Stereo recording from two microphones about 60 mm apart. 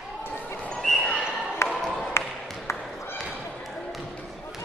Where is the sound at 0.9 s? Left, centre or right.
Centre.